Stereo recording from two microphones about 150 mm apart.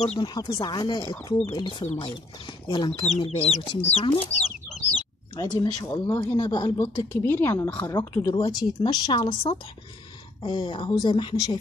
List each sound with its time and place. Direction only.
0.2 s speech: 25° left (ahead or behind)
5.3 s speech: 25° left (ahead or behind)
8.4 s speech: 30° left (ahead or behind)
9.3 s speech: 40° left (ahead or behind)